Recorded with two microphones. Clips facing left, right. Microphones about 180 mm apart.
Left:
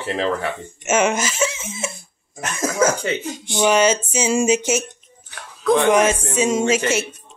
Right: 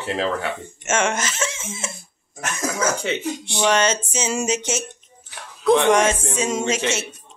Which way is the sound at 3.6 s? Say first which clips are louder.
Left 4 dB; 10° left (ahead or behind).